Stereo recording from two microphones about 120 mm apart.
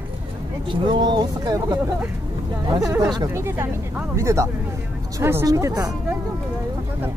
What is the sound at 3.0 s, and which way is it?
Speech, 35° right (ahead or behind).